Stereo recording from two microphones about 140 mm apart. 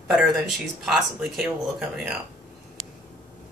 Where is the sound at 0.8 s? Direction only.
5° right (ahead or behind).